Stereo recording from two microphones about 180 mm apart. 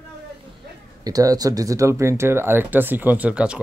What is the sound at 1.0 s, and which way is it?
Speech, 20° right (ahead or behind).